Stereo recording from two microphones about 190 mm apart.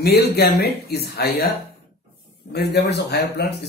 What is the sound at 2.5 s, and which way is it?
Speech, 60° left (ahead or behind).